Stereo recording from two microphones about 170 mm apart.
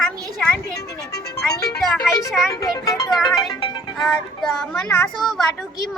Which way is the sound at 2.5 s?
20° left (ahead or behind).